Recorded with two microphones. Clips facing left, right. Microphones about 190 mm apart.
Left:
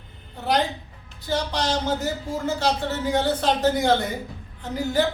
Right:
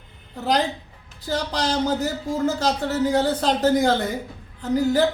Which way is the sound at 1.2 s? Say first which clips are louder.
Right 1 dB; 35° right (ahead or behind).